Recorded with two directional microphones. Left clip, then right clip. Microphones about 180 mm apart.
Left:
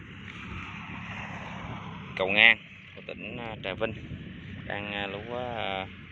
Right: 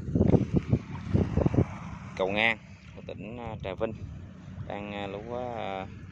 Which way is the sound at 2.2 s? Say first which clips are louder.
Left 6 dB; 20° right (ahead or behind).